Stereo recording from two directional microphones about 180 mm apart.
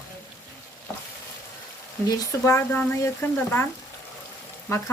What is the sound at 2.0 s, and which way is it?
Speech, 20° left (ahead or behind).